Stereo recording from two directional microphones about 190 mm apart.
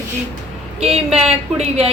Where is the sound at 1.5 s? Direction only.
35° right (ahead or behind).